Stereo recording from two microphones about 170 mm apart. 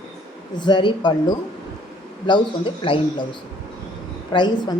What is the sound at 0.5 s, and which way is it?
Speech, 25° left (ahead or behind).